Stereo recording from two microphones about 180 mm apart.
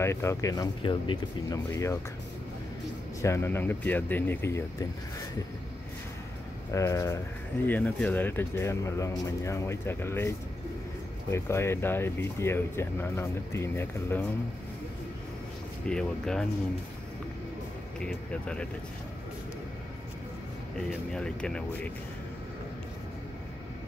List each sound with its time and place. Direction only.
0.0 s speech: 15° left (ahead or behind)
3.2 s speech: 15° left (ahead or behind)
6.7 s speech: 15° left (ahead or behind)
15.8 s speech: 5° left (ahead or behind)
17.9 s speech: 5° left (ahead or behind)
21.1 s speech: 5° left (ahead or behind)